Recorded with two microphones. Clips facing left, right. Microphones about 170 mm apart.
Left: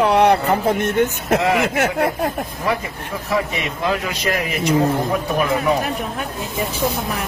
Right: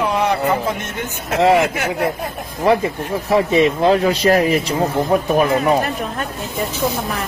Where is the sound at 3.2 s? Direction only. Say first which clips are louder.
Right 8 dB; 30° right (ahead or behind).